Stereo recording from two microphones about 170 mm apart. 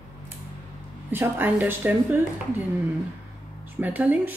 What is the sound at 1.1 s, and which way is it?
Speech, 10° right (ahead or behind).